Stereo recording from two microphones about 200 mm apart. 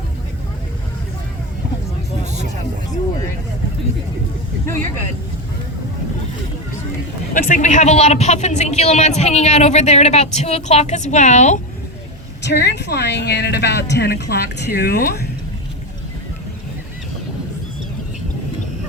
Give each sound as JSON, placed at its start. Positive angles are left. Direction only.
{"t": 7.3, "sound": "speech", "side_deg": 40}
{"t": 12.4, "sound": "speech", "side_deg": 60}